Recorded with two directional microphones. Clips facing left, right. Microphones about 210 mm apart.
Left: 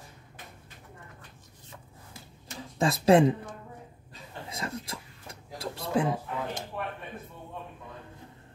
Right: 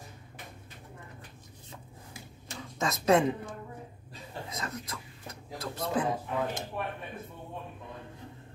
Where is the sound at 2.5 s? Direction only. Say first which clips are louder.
Left 5 dB; 30° left (ahead or behind).